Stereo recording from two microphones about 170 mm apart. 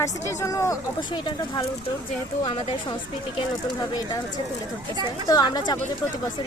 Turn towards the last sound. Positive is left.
turn(degrees=25)  # may be behind; listen again after turning